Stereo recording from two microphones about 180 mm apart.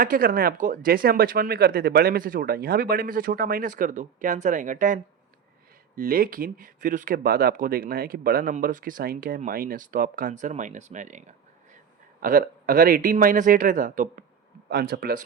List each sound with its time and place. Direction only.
0.0 s speech: 55° right (ahead or behind)
6.0 s speech: 55° right (ahead or behind)
12.2 s speech: 55° right (ahead or behind)
14.7 s speech: 65° right (ahead or behind)